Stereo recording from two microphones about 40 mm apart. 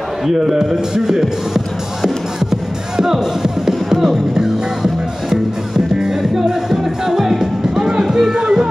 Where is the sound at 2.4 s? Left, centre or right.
Centre.